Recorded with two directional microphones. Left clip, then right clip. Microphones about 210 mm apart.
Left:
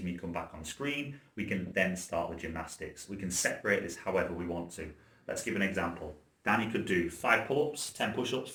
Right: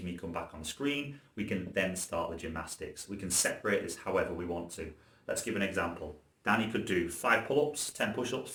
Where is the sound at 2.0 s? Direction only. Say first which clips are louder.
Left 1 dB; 10° right (ahead or behind).